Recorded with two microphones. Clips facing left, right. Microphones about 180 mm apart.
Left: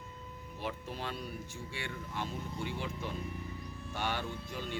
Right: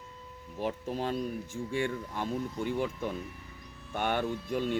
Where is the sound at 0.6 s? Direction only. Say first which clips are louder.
Right 7 dB; 40° right (ahead or behind).